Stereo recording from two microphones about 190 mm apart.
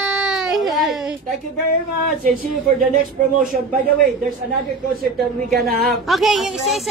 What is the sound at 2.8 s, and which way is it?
Speech, 50° right (ahead or behind).